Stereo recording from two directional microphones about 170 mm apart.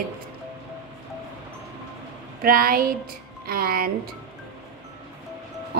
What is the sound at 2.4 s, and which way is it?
A woman's voice, 60° right (ahead or behind).